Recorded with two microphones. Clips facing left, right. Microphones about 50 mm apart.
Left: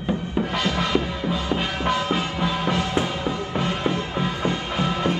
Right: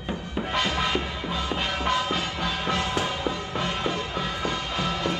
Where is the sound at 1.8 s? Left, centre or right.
Centre.